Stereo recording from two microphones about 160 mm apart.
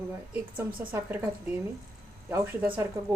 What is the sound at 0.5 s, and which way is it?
A woman's voice, 10° right (ahead or behind).